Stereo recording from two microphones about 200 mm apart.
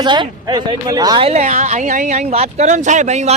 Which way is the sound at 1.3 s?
35° right (ahead or behind).